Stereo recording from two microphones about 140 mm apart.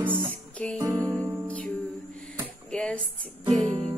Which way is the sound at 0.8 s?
20° right (ahead or behind).